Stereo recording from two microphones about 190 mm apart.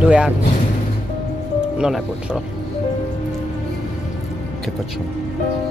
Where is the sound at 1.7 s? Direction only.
5° right (ahead or behind).